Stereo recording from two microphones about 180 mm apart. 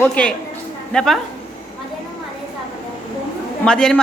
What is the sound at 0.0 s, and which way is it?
A woman's voice, 5° left (ahead or behind).